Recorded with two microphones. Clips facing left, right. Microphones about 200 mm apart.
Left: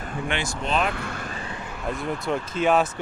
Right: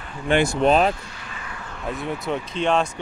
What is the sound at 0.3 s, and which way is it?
Speech, 55° right (ahead or behind).